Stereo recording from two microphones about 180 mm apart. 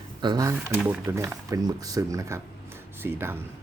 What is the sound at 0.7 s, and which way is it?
Speech, 5° right (ahead or behind).